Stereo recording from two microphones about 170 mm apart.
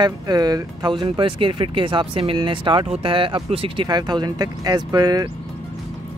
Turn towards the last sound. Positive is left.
turn(degrees=-20)  # may be behind; listen again after turning